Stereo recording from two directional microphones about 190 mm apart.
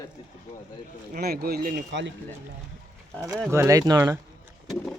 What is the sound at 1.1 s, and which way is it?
Speech, 55° right (ahead or behind).